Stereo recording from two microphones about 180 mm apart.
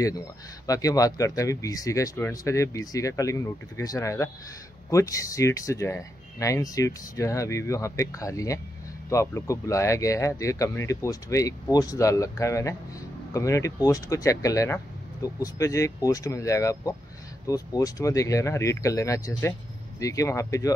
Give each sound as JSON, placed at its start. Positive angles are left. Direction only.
{"t": 0.7, "sound": "speech", "side_deg": 20}